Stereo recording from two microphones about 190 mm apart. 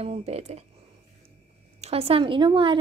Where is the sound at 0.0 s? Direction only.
35° right (ahead or behind).